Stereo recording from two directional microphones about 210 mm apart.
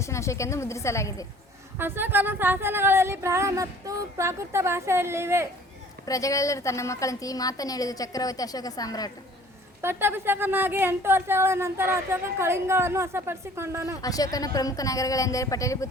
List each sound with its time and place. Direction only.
0.0 s a woman's voice: 15° left (ahead or behind)
1.8 s a woman's voice: 10° right (ahead or behind)
6.1 s a woman's voice: 15° left (ahead or behind)
9.8 s a woman's voice: 10° right (ahead or behind)
14.0 s a woman's voice: 15° left (ahead or behind)